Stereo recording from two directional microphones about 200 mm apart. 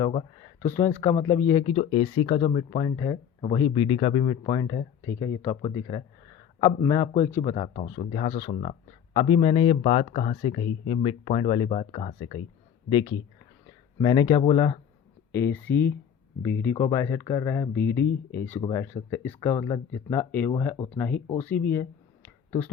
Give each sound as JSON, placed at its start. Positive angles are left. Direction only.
{"t": 0.0, "sound": "speech", "side_deg": 30}
{"t": 0.6, "sound": "speech", "side_deg": 10}
{"t": 7.4, "sound": "speech", "side_deg": 30}